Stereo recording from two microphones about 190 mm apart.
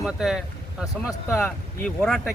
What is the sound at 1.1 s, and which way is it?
Speech, 15° left (ahead or behind).